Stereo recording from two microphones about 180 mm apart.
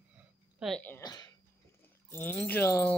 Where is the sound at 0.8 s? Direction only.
15° left (ahead or behind).